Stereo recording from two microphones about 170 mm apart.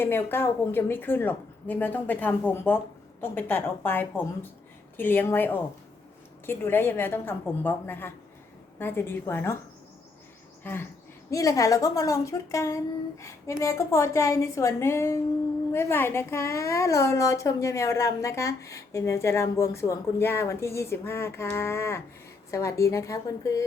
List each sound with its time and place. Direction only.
0.0 s a woman's voice: 10° left (ahead or behind)
10.6 s bird: 10° left (ahead or behind)
11.3 s a woman's voice: 20° left (ahead or behind)